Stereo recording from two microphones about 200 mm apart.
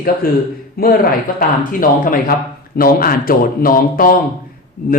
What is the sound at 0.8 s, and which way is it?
A man's voice, 50° left (ahead or behind).